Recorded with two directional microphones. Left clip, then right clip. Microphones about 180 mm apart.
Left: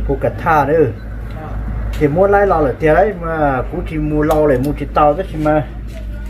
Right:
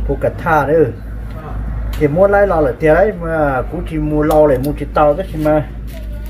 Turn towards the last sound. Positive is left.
turn(degrees=0)  # may be behind; listen again after turning